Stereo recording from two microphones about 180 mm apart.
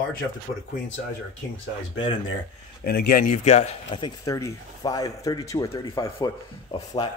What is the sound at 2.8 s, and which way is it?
Speech, 60° left (ahead or behind).